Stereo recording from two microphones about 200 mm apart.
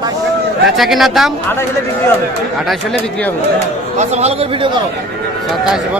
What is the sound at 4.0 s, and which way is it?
Speech, 35° right (ahead or behind).